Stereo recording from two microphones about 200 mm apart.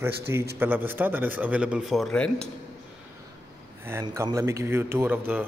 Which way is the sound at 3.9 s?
15° right (ahead or behind).